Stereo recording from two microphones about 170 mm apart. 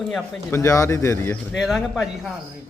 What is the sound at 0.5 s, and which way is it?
A man's voice, 20° left (ahead or behind).